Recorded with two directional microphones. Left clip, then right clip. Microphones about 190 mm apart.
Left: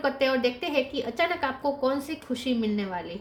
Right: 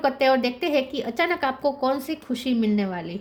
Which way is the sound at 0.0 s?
50° right (ahead or behind).